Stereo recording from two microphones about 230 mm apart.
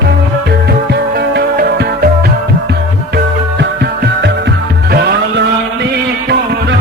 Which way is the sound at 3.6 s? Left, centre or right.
Right.